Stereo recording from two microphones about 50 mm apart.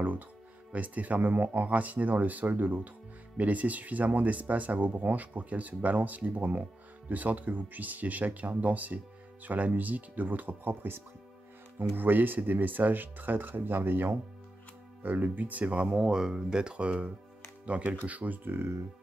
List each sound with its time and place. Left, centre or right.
0.7 s speech: right
15.6 s speech: right
16.1 s speech: centre; by 18.7 s right